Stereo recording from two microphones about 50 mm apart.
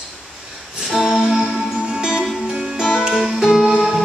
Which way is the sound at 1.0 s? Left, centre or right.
Centre.